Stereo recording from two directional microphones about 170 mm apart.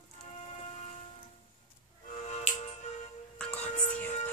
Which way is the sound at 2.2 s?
40° left (ahead or behind).